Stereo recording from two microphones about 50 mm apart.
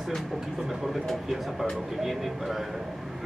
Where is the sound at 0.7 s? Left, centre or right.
Centre.